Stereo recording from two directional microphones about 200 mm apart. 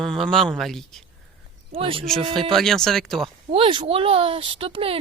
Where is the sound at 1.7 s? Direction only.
25° right (ahead or behind).